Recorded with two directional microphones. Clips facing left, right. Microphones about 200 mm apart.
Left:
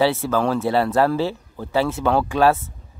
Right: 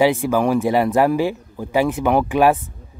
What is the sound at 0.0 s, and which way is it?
Speech, 15° right (ahead or behind).